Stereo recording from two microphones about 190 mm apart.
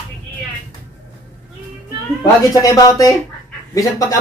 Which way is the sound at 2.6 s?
20° left (ahead or behind).